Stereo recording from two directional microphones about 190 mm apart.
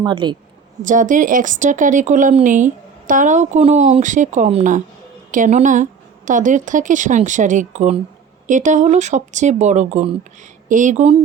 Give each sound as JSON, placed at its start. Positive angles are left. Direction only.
{"t": 0.0, "sound": "a woman's voice", "side_deg": -25}
{"t": 0.9, "sound": "a woman's voice", "side_deg": -45}